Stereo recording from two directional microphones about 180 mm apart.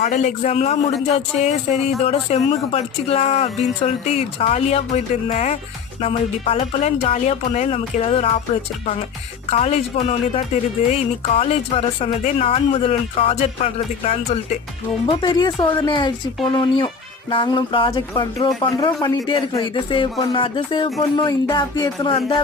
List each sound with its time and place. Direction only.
0.0 s speech: 45° left (ahead or behind)
9.5 s speech: 35° left (ahead or behind)
15.0 s speech: 25° left (ahead or behind)